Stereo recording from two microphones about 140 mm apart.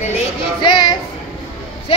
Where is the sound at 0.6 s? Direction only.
35° left (ahead or behind).